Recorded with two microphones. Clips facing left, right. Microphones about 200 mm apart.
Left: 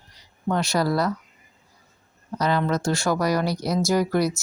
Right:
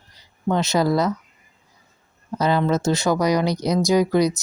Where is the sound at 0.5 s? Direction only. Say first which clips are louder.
Right 3 dB; 20° right (ahead or behind).